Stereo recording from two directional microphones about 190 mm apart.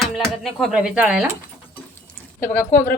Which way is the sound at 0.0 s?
Centre (ahead or behind).